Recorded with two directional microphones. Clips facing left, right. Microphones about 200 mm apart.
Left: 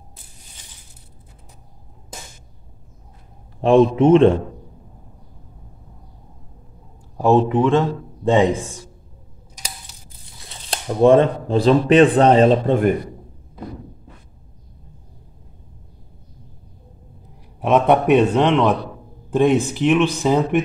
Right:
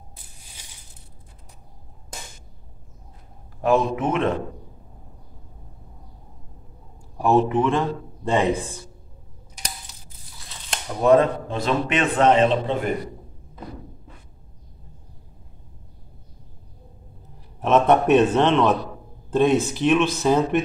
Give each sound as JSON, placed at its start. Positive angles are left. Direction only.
{"t": 3.6, "sound": "a man's voice", "side_deg": 30}
{"t": 7.2, "sound": "speech", "side_deg": 15}
{"t": 10.7, "sound": "speech", "side_deg": 30}
{"t": 17.6, "sound": "speech", "side_deg": 15}